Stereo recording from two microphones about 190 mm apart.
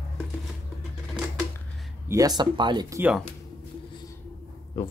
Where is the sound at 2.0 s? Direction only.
20° right (ahead or behind).